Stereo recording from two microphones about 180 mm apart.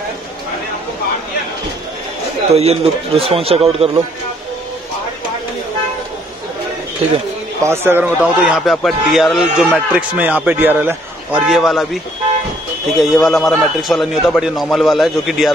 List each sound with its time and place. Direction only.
2.5 s a man's voice: 35° right (ahead or behind)
7.6 s a man's voice: 15° right (ahead or behind)
13.1 s a man's voice: centre (ahead or behind)